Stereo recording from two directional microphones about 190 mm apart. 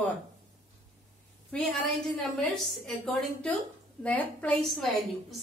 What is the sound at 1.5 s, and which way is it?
A woman's voice, 5° left (ahead or behind).